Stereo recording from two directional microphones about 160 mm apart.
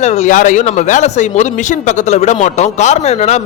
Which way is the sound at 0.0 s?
45° left (ahead or behind).